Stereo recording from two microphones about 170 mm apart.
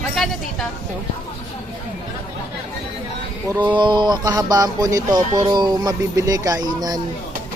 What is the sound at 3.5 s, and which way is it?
Speech, 25° right (ahead or behind).